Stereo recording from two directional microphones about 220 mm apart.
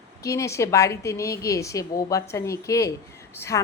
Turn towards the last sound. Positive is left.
turn(degrees=15)  # may be behind; listen again after turning